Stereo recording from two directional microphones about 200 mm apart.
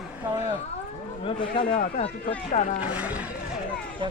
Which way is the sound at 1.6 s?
40° left (ahead or behind).